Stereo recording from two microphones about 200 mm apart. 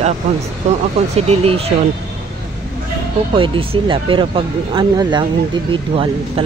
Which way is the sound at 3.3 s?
25° right (ahead or behind).